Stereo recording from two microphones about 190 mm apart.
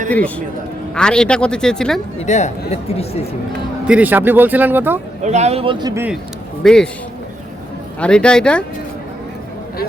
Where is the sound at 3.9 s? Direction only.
10° right (ahead or behind).